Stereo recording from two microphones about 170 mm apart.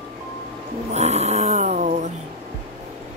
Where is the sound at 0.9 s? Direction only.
40° right (ahead or behind).